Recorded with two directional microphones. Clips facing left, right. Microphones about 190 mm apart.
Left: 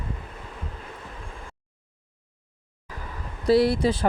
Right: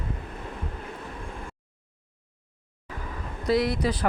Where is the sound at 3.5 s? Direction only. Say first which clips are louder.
Left 5 dB; 30° left (ahead or behind).